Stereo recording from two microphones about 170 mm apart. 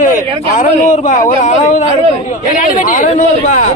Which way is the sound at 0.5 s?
50° left (ahead or behind).